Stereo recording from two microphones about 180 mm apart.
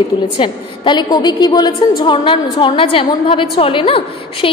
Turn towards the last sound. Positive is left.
turn(degrees=30)  # may be behind; listen again after turning